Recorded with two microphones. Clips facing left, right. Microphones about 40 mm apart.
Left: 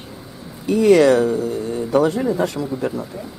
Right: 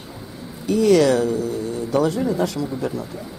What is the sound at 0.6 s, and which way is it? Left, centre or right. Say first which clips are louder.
Speech: left 3 dB; left.